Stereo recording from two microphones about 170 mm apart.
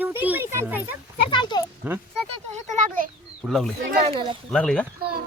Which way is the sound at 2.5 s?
45° right (ahead or behind).